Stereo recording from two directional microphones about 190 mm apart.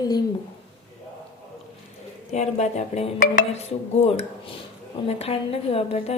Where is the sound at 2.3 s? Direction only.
35° left (ahead or behind).